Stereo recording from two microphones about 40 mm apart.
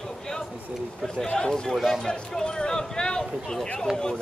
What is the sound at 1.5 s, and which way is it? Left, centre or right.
Speech, centre.